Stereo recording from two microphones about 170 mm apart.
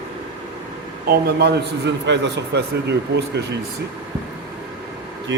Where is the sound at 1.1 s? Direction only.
70° right (ahead or behind); by 3.5 s 90° right.